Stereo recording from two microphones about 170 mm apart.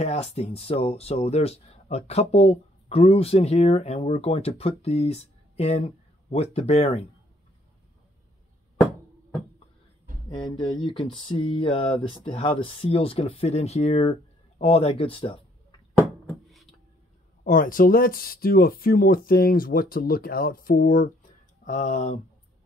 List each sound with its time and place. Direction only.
0.0 s speech: 40° left (ahead or behind)
10.3 s speech: 25° left (ahead or behind)
15.9 s a sound: 15° left (ahead or behind)
17.4 s speech: 55° left (ahead or behind)
21.6 s speech: 45° left (ahead or behind)